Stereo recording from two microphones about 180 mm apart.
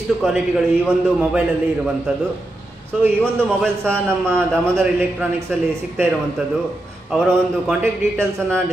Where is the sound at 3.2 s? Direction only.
5° left (ahead or behind).